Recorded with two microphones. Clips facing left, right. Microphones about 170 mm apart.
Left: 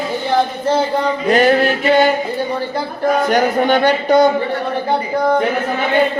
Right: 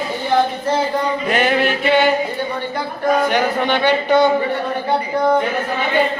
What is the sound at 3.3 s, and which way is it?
Speech, 45° left (ahead or behind).